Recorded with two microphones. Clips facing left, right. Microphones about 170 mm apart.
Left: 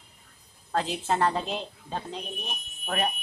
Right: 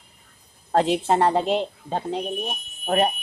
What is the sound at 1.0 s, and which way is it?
Speech, 30° right (ahead or behind).